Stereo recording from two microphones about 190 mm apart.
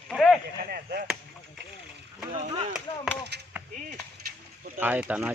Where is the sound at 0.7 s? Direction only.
50° right (ahead or behind).